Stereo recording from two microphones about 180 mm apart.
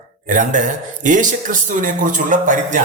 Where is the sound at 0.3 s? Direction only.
45° right (ahead or behind).